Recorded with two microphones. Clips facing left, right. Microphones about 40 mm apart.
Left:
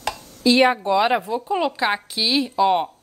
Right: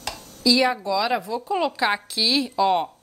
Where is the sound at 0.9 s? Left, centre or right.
Left.